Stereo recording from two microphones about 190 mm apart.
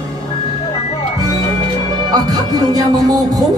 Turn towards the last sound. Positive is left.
turn(degrees=-20)  # may be behind; listen again after turning